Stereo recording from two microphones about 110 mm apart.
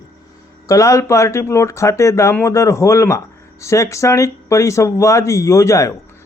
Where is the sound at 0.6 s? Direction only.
30° left (ahead or behind).